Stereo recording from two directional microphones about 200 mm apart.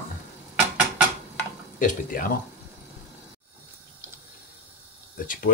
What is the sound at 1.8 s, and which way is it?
Speech, 40° left (ahead or behind).